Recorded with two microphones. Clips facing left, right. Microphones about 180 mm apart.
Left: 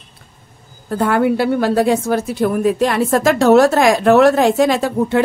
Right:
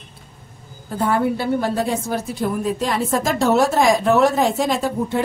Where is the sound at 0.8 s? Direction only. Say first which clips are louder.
Left 4 dB; 75° left (ahead or behind).